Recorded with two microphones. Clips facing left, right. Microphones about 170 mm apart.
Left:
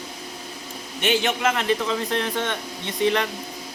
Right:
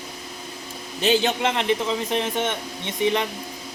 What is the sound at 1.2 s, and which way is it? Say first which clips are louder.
Speech: even; 30° right (ahead or behind).